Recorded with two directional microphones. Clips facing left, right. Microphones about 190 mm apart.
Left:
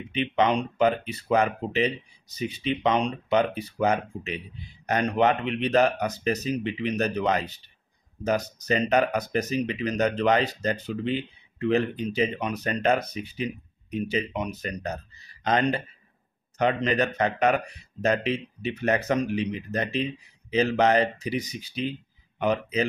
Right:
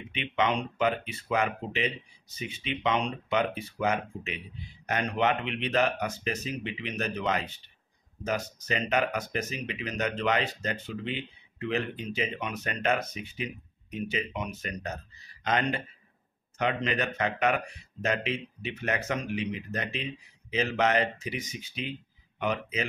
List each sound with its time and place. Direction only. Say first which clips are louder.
0.1 s speech: left 5 dB; 35° left (ahead or behind)